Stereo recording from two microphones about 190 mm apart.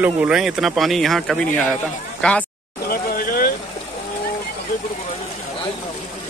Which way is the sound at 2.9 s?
50° left (ahead or behind).